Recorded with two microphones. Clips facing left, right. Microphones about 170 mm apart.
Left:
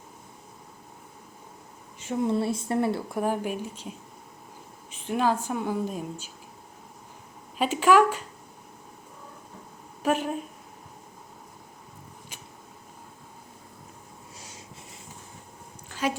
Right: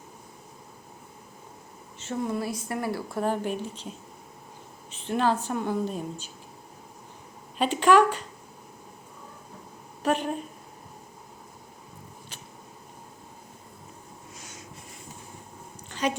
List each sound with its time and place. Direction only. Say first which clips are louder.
2.2 s speech: left 6 dB; 25° left (ahead or behind); by 6.3 s 10° left (ahead or behind)
7.6 s speech: even; 10° left (ahead or behind)
10.0 s speech: even; 5° left (ahead or behind)
14.3 s rub: even; 30° left (ahead or behind)
15.9 s a sound: right 1 dB; 5° left (ahead or behind)